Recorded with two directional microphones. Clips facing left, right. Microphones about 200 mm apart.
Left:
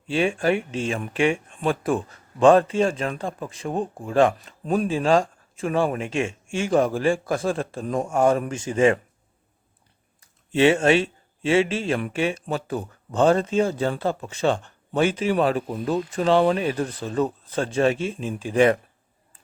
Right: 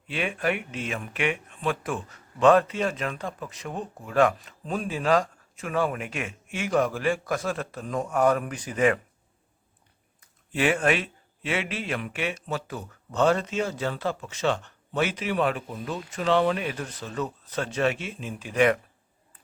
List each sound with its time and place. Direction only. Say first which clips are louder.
0.1 s a man's voice: left 6 dB; 30° left (ahead or behind)
4.6 s speech: left 8 dB; 50° left (ahead or behind)
4.9 s a man's voice: left 2 dB; 30° left (ahead or behind)
10.2 s a man's voice: left 8 dB; 25° left (ahead or behind)